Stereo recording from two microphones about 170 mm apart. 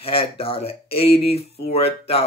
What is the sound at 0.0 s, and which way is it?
Speech, 35° left (ahead or behind).